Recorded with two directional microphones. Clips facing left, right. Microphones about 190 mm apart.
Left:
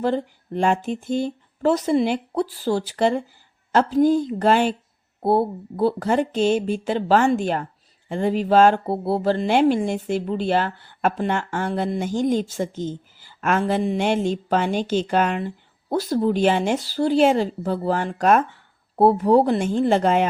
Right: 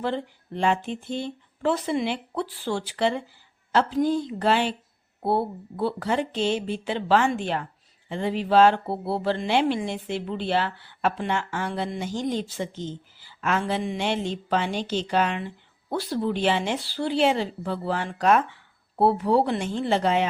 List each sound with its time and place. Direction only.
0.0 s speech: 40° left (ahead or behind)